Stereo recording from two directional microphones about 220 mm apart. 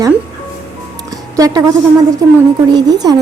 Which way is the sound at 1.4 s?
15° right (ahead or behind).